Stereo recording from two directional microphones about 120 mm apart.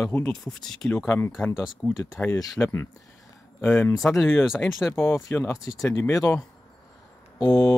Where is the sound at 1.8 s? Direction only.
15° left (ahead or behind).